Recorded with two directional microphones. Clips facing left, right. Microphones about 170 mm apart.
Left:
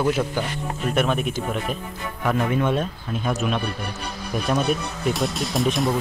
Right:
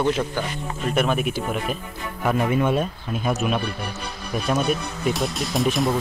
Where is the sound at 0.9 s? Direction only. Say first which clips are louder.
Right 1 dB; centre (ahead or behind).